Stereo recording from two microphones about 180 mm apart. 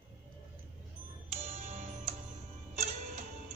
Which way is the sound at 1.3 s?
35° right (ahead or behind).